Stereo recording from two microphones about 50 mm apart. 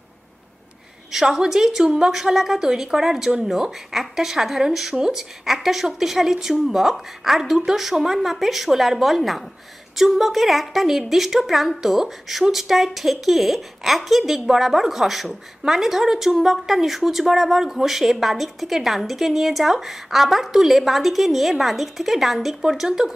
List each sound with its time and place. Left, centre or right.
1.1 s a woman's voice: centre